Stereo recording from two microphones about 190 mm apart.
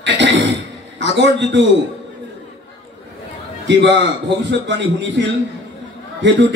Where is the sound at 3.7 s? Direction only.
70° right (ahead or behind).